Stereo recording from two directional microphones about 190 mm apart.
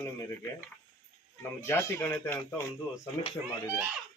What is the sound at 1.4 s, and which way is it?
Speech, 15° left (ahead or behind).